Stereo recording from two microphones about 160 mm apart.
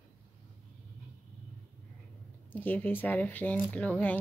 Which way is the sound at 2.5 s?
10° left (ahead or behind).